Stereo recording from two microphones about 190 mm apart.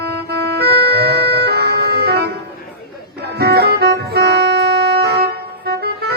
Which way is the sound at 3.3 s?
60° right (ahead or behind).